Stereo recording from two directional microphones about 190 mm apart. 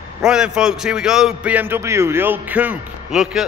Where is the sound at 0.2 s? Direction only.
5° right (ahead or behind).